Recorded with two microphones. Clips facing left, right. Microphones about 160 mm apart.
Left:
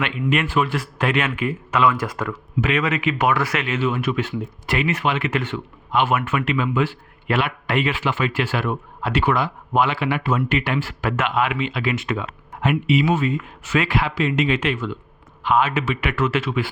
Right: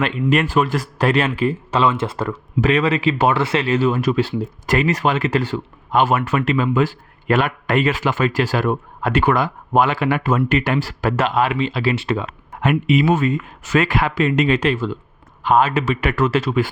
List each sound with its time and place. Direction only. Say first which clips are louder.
0.0 s speech: right 4 dB; 40° right (ahead or behind)
9.0 s speech: right 2 dB; 50° right (ahead or behind); by 12.3 s 30° right (ahead or behind)
12.6 s speech: right 3 dB; 50° right (ahead or behind)